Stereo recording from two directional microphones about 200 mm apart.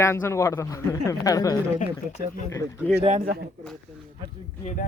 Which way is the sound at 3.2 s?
55° right (ahead or behind).